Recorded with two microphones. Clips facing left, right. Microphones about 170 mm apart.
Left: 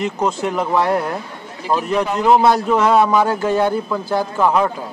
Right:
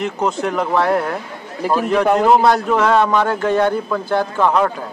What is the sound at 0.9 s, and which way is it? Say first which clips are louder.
Speech: right 1 dB; 20° left (ahead or behind).